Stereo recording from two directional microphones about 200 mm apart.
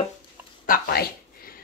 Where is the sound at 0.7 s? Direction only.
45° left (ahead or behind).